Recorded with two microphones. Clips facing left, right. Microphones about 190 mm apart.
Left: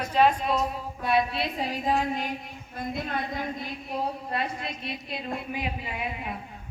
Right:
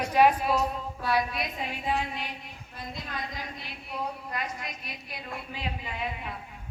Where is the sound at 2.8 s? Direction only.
55° left (ahead or behind).